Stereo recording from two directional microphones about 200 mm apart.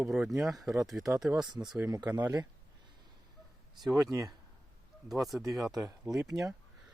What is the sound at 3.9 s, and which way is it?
Speech, 15° right (ahead or behind).